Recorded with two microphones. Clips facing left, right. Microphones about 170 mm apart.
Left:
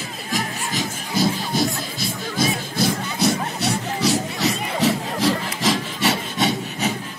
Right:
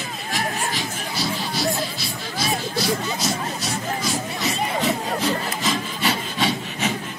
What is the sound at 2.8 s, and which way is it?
Music, 60° left (ahead or behind).